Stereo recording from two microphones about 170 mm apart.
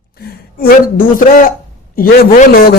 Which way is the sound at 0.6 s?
60° left (ahead or behind).